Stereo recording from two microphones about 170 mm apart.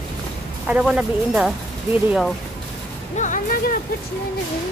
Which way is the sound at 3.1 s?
50° left (ahead or behind).